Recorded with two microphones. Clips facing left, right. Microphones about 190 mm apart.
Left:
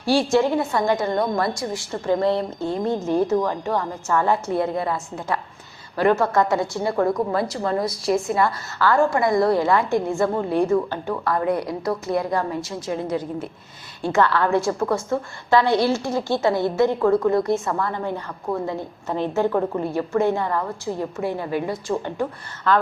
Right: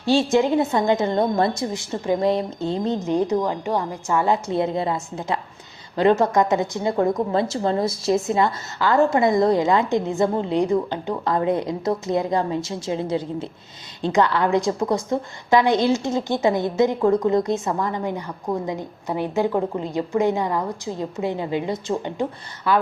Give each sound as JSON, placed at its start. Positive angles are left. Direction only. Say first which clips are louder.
{"t": 0.0, "sound": "a woman's voice", "louder": "even", "side_deg": -20}
{"t": 14.0, "sound": "a woman's voice", "louder": "even", "side_deg": -15}